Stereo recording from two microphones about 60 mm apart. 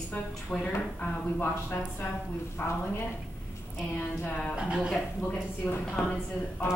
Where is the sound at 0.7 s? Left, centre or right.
Left.